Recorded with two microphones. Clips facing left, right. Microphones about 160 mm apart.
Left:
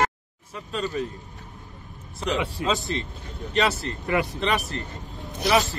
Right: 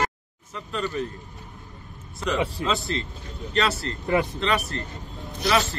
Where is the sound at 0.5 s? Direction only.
20° left (ahead or behind).